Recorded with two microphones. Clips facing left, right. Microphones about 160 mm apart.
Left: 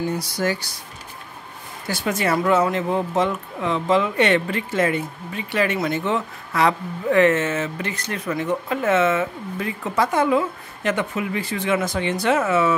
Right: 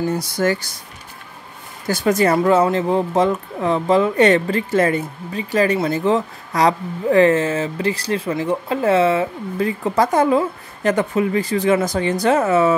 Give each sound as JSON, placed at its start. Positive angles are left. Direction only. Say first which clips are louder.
{"t": 0.4, "sound": "speech", "louder": "right 5 dB", "side_deg": -50}
{"t": 1.9, "sound": "speech", "louder": "right 6 dB", "side_deg": -40}